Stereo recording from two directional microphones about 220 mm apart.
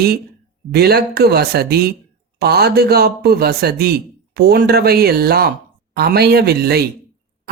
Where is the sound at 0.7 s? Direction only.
45° right (ahead or behind).